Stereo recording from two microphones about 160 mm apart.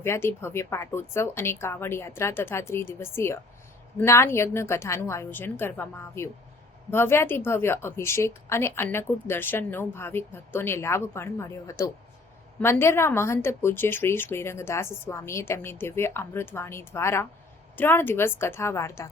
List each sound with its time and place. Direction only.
0.0 s a woman's voice: 15° left (ahead or behind)